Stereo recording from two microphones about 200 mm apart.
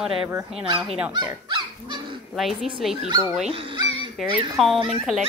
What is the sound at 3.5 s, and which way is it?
Music, 25° right (ahead or behind).